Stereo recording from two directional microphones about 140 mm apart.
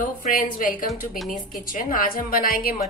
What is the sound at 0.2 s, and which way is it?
A woman's voice, 75° left (ahead or behind).